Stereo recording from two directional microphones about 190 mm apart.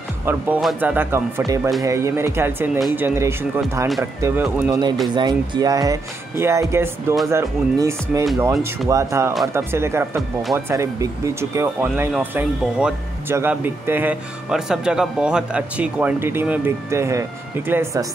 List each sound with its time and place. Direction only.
0.2 s speech: 10° right (ahead or behind)